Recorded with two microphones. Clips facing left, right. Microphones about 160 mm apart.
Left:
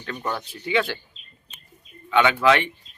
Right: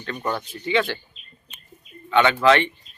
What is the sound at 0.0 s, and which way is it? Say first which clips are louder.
Speech: right 2 dB; 5° left (ahead or behind).